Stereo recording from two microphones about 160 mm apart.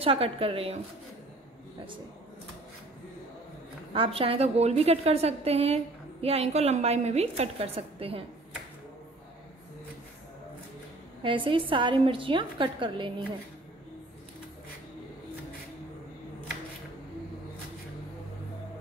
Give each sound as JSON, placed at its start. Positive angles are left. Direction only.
{"t": 0.0, "sound": "a woman's voice", "side_deg": -35}
{"t": 3.9, "sound": "a woman's voice", "side_deg": -35}
{"t": 11.2, "sound": "a woman's voice", "side_deg": -30}